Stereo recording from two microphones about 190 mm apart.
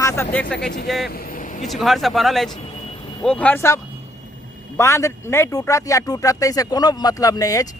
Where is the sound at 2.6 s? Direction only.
30° left (ahead or behind).